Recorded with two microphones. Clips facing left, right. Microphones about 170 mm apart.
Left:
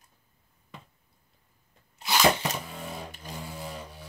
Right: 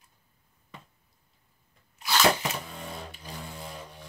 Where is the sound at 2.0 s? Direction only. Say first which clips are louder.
Left 1 dB; 15° left (ahead or behind).